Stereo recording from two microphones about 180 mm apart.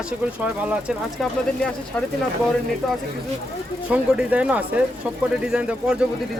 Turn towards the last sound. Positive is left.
turn(degrees=-5)  # may be behind; listen again after turning